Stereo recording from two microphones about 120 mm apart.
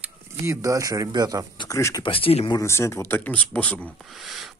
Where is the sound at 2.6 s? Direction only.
25° left (ahead or behind).